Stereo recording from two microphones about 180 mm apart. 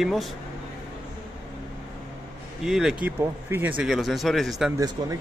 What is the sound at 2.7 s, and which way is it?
Speech, 5° right (ahead or behind).